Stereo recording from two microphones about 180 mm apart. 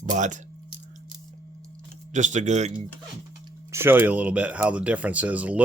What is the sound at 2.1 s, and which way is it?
Speech, 40° right (ahead or behind).